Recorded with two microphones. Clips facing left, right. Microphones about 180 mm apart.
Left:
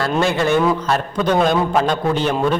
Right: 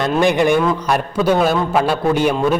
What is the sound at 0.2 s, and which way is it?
A man's voice, 15° right (ahead or behind).